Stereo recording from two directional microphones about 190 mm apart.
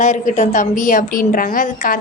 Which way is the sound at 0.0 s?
40° left (ahead or behind).